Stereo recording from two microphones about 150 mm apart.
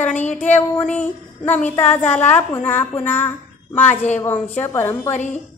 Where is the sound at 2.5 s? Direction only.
15° left (ahead or behind).